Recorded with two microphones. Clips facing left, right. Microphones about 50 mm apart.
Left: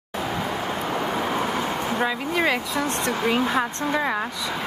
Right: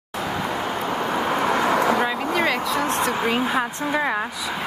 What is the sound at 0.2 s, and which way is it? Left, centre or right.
Vehicle, centre.